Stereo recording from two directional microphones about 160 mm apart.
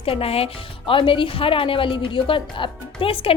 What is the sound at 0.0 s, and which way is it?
Speech, 35° left (ahead or behind).